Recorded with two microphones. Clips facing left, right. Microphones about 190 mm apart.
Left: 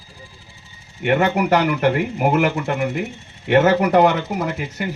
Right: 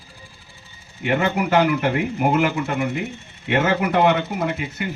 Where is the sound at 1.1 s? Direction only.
50° left (ahead or behind).